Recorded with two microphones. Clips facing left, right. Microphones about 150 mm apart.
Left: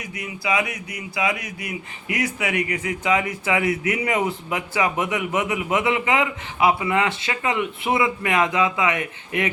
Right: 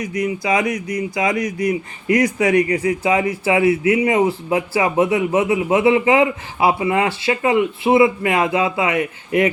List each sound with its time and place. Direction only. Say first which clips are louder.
0.0 s speech: right 9 dB; 40° right (ahead or behind)